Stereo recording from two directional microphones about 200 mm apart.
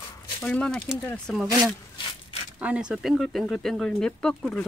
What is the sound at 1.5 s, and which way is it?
Speech, 15° right (ahead or behind).